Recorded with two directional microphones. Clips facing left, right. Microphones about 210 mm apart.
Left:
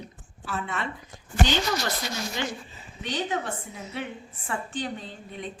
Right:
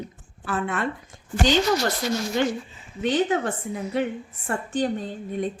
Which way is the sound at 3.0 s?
50° right (ahead or behind).